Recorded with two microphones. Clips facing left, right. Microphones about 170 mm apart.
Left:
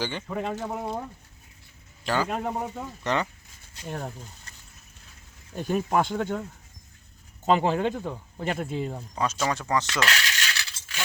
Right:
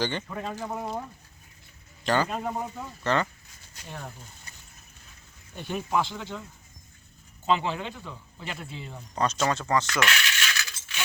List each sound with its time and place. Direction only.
0.0 s speech: 10° left (ahead or behind)
2.0 s speech: 5° left (ahead or behind)
3.8 s speech: 45° left (ahead or behind)
5.5 s speech: 45° left (ahead or behind)
7.4 s speech: 45° left (ahead or behind)
9.1 s speech: 5° left (ahead or behind)
10.0 s coin: 35° left (ahead or behind)
10.3 s a sound: 40° left (ahead or behind)